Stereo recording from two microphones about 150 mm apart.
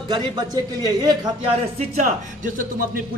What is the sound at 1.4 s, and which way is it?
Speech, 45° right (ahead or behind).